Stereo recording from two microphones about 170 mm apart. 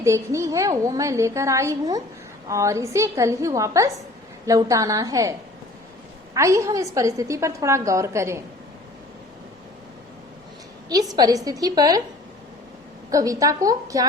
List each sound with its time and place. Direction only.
0.0 s a woman's voice: 15° right (ahead or behind)
6.3 s a woman's voice: 20° right (ahead or behind)
10.8 s a woman's voice: 20° right (ahead or behind)
13.1 s a woman's voice: 20° right (ahead or behind)